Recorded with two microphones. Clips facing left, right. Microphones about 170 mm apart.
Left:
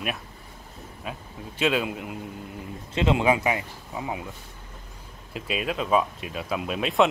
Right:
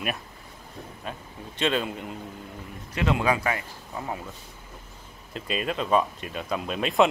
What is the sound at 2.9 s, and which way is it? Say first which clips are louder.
Speech: left 3 dB; 20° left (ahead or behind).